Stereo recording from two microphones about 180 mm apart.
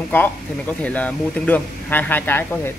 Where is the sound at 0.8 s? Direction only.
10° left (ahead or behind).